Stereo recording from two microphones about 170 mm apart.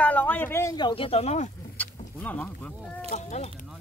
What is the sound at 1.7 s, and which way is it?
Wild animals, 10° left (ahead or behind).